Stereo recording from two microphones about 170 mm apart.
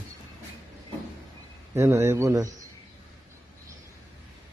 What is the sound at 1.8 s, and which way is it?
Speech, 15° right (ahead or behind).